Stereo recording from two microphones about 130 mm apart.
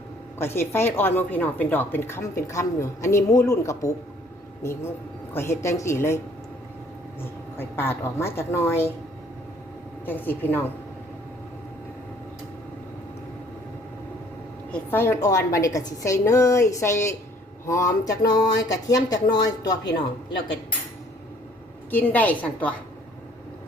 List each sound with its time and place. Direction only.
0.3 s a woman's voice: 20° left (ahead or behind)
7.2 s speech: 20° left (ahead or behind)
10.1 s a woman's voice: 15° left (ahead or behind)
14.7 s speech: 15° left (ahead or behind)
21.8 s a woman's voice: 15° left (ahead or behind)